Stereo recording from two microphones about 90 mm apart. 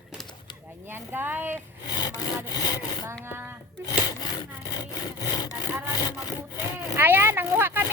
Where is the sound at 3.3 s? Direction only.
25° right (ahead or behind).